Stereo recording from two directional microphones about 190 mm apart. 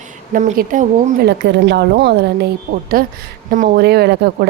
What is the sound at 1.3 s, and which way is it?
A woman's voice, 65° right (ahead or behind).